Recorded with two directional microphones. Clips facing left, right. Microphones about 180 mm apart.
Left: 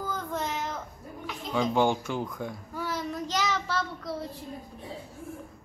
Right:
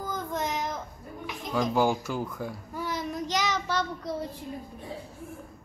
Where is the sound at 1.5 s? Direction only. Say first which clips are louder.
Even; centre (ahead or behind).